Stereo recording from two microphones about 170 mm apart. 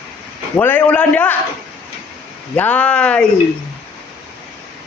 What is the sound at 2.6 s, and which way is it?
Speech, 10° left (ahead or behind).